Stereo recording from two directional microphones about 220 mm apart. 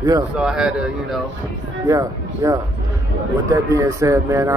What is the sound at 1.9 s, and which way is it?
Speech, 15° right (ahead or behind).